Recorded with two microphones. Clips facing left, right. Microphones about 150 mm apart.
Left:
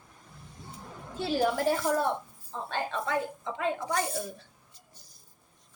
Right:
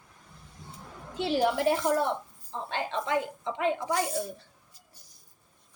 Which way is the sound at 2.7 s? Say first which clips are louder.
Right 1 dB; 15° right (ahead or behind).